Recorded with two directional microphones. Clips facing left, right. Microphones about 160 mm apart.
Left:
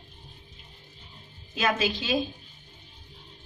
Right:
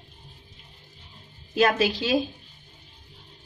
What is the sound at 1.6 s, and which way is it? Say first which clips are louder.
Speech: right 5 dB; 60° right (ahead or behind).